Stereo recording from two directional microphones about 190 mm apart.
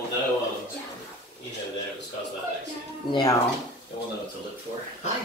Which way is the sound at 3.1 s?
20° left (ahead or behind).